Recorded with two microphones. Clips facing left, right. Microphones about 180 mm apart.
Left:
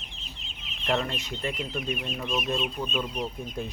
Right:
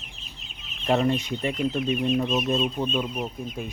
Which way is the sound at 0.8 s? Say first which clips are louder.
Right 6 dB; 20° right (ahead or behind).